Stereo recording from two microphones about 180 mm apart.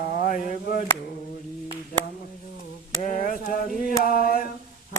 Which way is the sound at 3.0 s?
50° left (ahead or behind).